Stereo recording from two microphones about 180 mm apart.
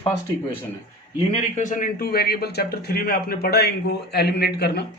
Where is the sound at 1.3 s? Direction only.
40° left (ahead or behind); by 4.9 s 65° left (ahead or behind).